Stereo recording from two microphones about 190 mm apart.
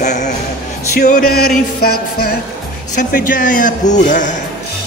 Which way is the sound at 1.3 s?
55° left (ahead or behind).